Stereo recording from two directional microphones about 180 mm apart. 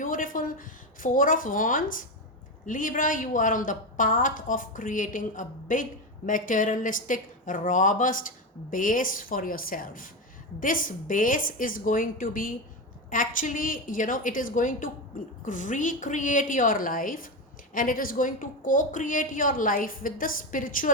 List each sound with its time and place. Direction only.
0.0 s a woman's voice: 50° left (ahead or behind)